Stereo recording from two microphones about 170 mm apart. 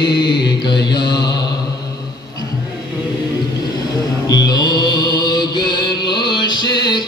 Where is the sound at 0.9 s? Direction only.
25° left (ahead or behind).